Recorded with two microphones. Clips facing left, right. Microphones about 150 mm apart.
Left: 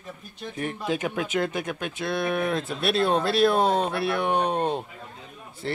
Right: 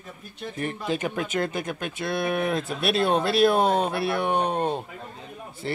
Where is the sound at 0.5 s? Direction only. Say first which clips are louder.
Even; centre (ahead or behind).